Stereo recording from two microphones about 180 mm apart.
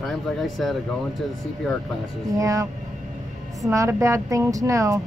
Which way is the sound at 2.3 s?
20° right (ahead or behind).